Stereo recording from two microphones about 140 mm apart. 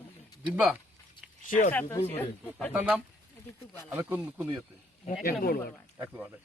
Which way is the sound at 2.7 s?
10° right (ahead or behind).